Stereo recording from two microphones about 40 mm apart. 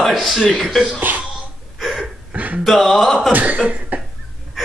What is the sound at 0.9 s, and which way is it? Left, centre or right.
Throat clearing, right.